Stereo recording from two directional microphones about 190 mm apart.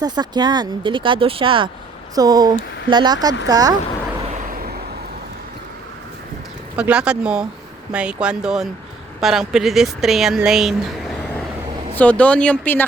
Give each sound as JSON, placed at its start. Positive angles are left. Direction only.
{"t": 0.0, "sound": "speech", "side_deg": -20}
{"t": 4.2, "sound": "vehicle", "side_deg": -40}
{"t": 6.7, "sound": "speech", "side_deg": -5}